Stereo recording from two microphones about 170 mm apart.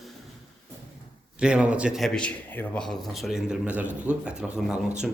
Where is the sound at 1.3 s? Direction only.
5° right (ahead or behind).